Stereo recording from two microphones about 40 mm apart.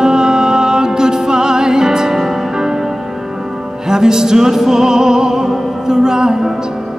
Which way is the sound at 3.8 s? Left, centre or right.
Centre.